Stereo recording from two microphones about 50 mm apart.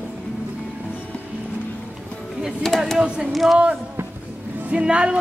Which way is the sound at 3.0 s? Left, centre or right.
Centre.